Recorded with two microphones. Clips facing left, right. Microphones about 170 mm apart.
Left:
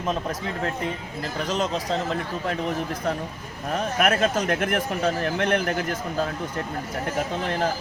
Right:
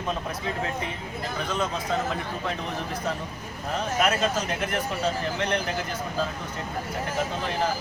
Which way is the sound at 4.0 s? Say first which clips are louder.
Left 3 dB; 55° left (ahead or behind).